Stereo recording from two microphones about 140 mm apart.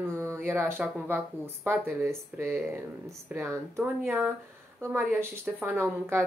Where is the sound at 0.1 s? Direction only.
20° right (ahead or behind).